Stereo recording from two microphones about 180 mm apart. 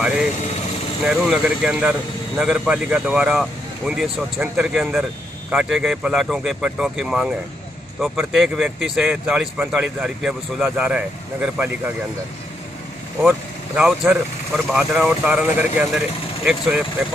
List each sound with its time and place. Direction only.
0.0 s speech: 5° right (ahead or behind)
13.2 s speech: 5° right (ahead or behind)